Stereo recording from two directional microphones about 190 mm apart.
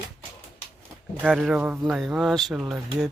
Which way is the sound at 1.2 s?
Centre (ahead or behind).